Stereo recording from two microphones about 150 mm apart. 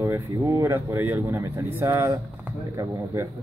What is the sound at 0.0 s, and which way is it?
Speech, 20° right (ahead or behind).